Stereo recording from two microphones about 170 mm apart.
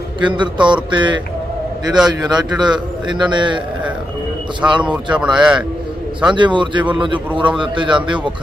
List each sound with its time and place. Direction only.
0.2 s a man's voice: 25° right (ahead or behind)
2.0 s a man's voice: 5° right (ahead or behind)
2.6 s a man's voice: 25° right (ahead or behind)
4.6 s a man's voice: 15° right (ahead or behind)
6.3 s a man's voice: 30° right (ahead or behind)